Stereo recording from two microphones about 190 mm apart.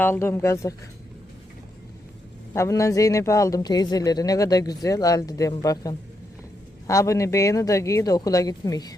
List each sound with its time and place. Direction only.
0.0 s speech: 10° left (ahead or behind)
2.5 s speech: 15° left (ahead or behind)